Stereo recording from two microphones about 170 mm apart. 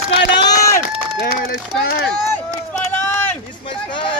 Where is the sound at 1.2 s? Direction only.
70° left (ahead or behind).